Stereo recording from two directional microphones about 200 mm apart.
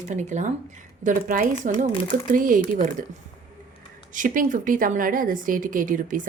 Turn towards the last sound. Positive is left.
turn(degrees=-40)  # may be behind; listen again after turning